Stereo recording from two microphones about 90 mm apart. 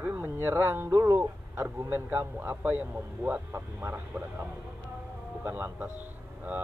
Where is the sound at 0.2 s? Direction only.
25° right (ahead or behind).